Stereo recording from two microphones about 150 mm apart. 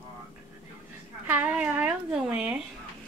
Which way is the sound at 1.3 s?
10° right (ahead or behind).